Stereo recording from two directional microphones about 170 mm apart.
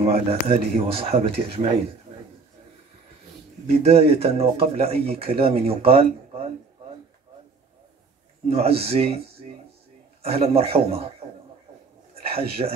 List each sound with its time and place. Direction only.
0.0 s speech: 35° right (ahead or behind)
3.8 s speech: 35° right (ahead or behind)
8.5 s speech: 35° right (ahead or behind)
10.2 s speech: 35° right (ahead or behind)
12.1 s a sound: 35° right (ahead or behind)